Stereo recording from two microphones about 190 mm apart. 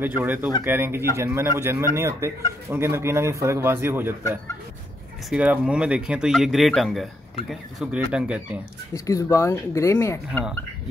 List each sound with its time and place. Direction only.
0.0 s a man's voice: 10° right (ahead or behind)
5.3 s speech: 5° right (ahead or behind)
8.9 s speech: 15° left (ahead or behind)